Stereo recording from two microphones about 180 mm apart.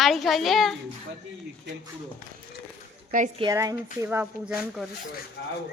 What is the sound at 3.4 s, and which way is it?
Speech, 20° right (ahead or behind).